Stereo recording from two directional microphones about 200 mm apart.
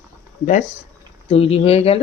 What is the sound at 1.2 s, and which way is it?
Speech, 30° left (ahead or behind).